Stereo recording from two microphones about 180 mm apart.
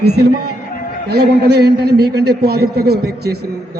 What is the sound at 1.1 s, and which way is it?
A man's voice, 65° right (ahead or behind).